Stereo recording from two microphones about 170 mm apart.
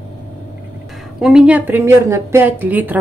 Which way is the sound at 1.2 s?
5° right (ahead or behind).